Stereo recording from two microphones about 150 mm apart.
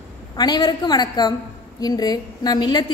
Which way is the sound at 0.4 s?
30° left (ahead or behind).